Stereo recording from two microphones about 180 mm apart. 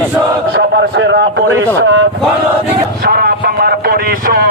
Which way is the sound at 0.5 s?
80° right.